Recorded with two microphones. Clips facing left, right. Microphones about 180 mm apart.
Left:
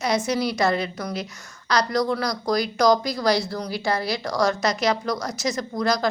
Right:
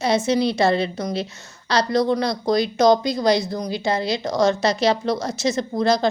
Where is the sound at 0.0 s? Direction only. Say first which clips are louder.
Right 4 dB; 25° right (ahead or behind).